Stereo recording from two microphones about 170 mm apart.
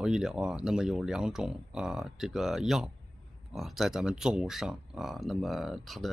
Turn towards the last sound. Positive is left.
turn(degrees=0)  # may be behind; listen again after turning